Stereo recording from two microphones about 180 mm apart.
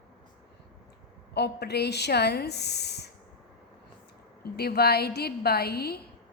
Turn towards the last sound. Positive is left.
turn(degrees=60)  # may be behind; listen again after turning